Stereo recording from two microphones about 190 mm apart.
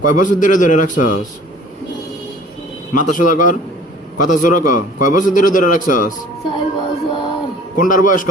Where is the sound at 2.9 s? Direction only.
45° left (ahead or behind).